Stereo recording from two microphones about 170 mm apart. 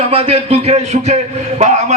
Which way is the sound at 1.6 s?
40° right (ahead or behind).